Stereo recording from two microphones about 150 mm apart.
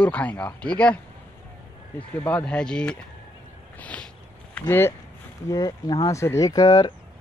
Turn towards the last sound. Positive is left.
turn(degrees=25)  # may be behind; listen again after turning